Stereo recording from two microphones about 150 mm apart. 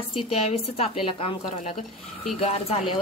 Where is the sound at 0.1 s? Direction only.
40° left (ahead or behind).